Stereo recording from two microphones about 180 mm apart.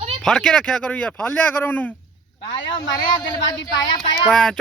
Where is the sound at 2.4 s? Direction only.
25° left (ahead or behind).